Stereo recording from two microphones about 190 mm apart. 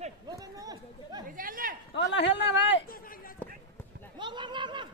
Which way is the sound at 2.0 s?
70° left (ahead or behind).